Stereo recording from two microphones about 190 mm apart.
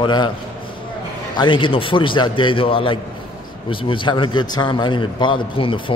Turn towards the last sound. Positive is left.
turn(degrees=25)  # may be behind; listen again after turning